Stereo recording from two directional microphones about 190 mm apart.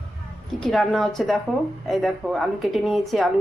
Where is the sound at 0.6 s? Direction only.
Centre (ahead or behind).